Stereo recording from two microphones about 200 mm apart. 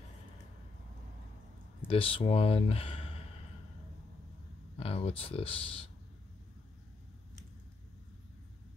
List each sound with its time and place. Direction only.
1.9 s speech: 30° left (ahead or behind)
4.7 s speech: 30° left (ahead or behind)